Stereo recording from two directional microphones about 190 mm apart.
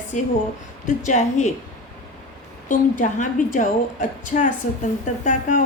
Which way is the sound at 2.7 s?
45° left (ahead or behind).